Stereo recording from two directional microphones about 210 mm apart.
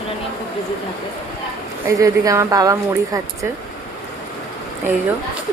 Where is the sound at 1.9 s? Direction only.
15° right (ahead or behind).